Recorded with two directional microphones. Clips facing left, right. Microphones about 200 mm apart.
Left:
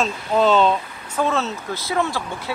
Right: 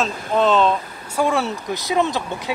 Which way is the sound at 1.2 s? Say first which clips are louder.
Right 2 dB; 15° right (ahead or behind).